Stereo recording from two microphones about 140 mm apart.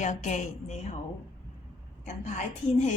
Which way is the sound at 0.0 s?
60° left (ahead or behind).